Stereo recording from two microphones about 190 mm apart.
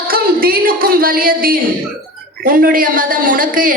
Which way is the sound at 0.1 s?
50° right (ahead or behind).